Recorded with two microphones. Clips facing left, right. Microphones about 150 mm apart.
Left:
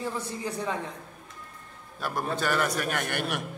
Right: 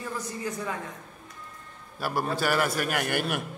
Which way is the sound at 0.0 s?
30° left (ahead or behind).